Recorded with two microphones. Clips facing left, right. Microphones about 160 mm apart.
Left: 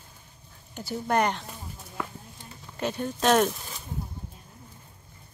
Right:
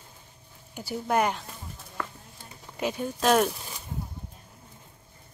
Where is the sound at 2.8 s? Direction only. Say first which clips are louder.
Even; 10° right (ahead or behind).